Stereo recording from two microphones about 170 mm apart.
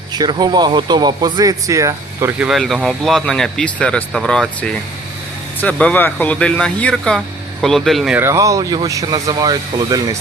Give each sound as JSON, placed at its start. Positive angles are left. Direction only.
{"t": 0.1, "sound": "speech", "side_deg": -25}
{"t": 2.5, "sound": "speech", "side_deg": 0}
{"t": 8.2, "sound": "speech", "side_deg": -20}